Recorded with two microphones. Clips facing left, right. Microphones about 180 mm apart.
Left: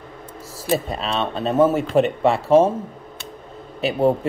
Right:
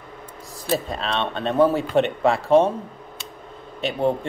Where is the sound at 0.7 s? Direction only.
5° left (ahead or behind).